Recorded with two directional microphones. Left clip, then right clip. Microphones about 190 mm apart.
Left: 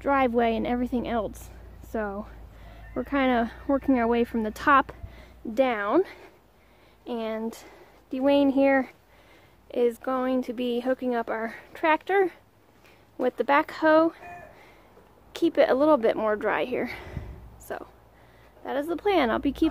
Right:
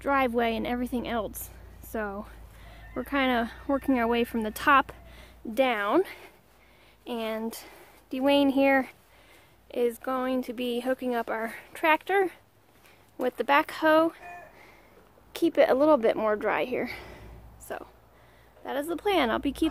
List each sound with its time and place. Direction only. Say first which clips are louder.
0.0 s a woman's voice: left 2 dB; 5° left (ahead or behind)
9.7 s speech: left 3 dB; 10° left (ahead or behind)
15.3 s speech: left 1 dB; 15° right (ahead or behind)